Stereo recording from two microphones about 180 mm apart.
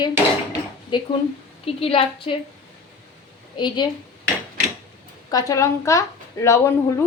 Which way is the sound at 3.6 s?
25° left (ahead or behind).